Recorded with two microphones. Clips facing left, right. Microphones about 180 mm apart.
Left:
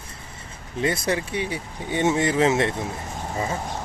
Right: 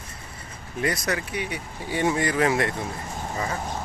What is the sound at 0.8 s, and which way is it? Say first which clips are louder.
Speech: left 3 dB; 25° left (ahead or behind).